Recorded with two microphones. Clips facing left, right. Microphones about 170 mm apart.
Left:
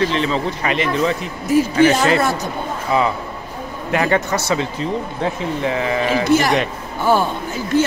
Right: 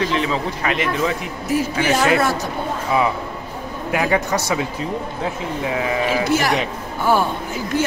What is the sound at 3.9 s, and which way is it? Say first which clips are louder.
Speech: left 1 dB; 5° right (ahead or behind).